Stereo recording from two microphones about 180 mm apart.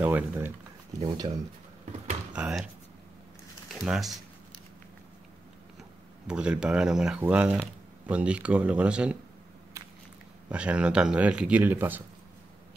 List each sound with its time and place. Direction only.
0.0 s speech: 10° right (ahead or behind)
0.9 s speech: 20° right (ahead or behind)
2.3 s speech: 5° right (ahead or behind)
3.7 s speech: centre (ahead or behind)
6.2 s speech: 5° right (ahead or behind)
10.5 s speech: 5° right (ahead or behind)